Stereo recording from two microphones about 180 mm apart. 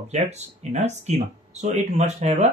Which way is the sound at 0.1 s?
40° right (ahead or behind).